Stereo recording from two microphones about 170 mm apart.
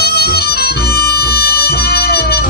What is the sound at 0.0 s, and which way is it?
Music, 70° left (ahead or behind).